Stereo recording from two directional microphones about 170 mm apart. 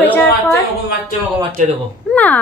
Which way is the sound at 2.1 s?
10° left (ahead or behind).